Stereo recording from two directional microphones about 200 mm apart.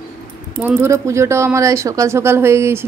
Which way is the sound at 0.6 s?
15° right (ahead or behind).